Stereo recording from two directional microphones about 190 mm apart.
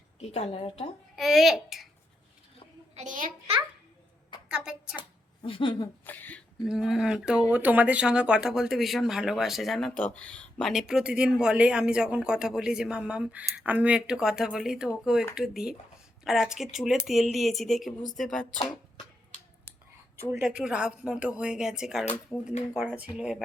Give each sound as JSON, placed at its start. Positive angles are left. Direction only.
{"t": 0.2, "sound": "a woman's voice", "side_deg": 35}
{"t": 1.1, "sound": "a child's voice", "side_deg": 0}
{"t": 2.9, "sound": "a child's voice", "side_deg": -40}
{"t": 4.4, "sound": "a sound", "side_deg": -5}
{"t": 4.9, "sound": "a sound", "side_deg": 25}
{"t": 6.1, "sound": "speech", "side_deg": 10}
{"t": 6.7, "sound": "speech", "side_deg": 0}
{"t": 20.3, "sound": "speech", "side_deg": -5}
{"t": 22.3, "sound": "speech", "side_deg": 10}
{"t": 22.7, "sound": "speech", "side_deg": -10}